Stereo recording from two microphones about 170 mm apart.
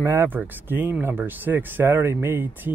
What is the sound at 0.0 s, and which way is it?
Speech, 15° right (ahead or behind).